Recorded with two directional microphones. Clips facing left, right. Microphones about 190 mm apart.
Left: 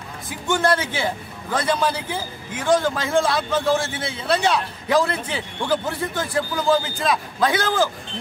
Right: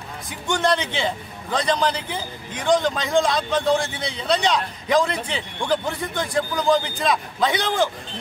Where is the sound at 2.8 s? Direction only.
20° right (ahead or behind).